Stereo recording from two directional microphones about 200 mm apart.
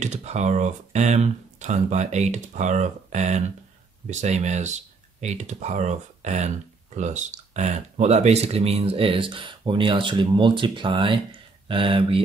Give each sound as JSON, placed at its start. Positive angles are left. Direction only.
{"t": 0.0, "sound": "speech", "side_deg": -35}